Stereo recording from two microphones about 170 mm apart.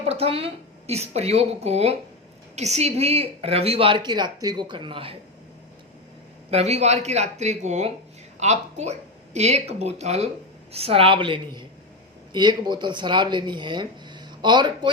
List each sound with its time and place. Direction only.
0.1 s speech: 35° right (ahead or behind)
6.5 s speech: 40° right (ahead or behind)